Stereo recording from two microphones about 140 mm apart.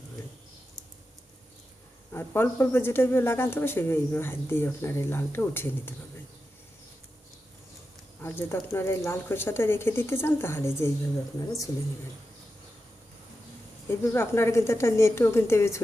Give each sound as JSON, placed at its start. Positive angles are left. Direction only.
{"t": 2.1, "sound": "speech", "side_deg": 15}
{"t": 8.2, "sound": "speech", "side_deg": 15}
{"t": 14.0, "sound": "speech", "side_deg": 20}